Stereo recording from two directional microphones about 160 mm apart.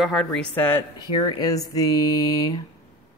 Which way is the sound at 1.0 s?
25° left (ahead or behind).